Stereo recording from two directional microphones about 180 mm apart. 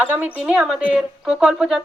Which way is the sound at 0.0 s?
10° right (ahead or behind).